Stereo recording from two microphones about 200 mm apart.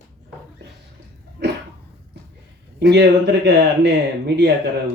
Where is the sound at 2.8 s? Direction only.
55° right (ahead or behind).